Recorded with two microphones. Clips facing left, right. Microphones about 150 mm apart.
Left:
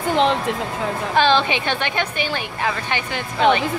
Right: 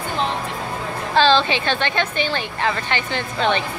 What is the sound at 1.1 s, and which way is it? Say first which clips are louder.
A woman's voice: right 2 dB; 15° left (ahead or behind).